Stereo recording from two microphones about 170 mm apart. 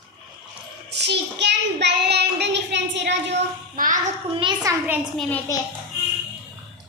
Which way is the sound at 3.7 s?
50° right (ahead or behind).